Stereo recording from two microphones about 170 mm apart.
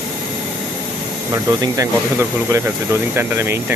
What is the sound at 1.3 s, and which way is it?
Speech, 20° right (ahead or behind).